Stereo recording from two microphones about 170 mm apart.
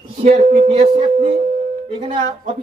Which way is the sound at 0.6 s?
35° right (ahead or behind).